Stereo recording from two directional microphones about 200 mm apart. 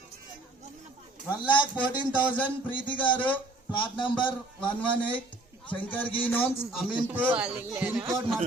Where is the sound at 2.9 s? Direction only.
10° left (ahead or behind).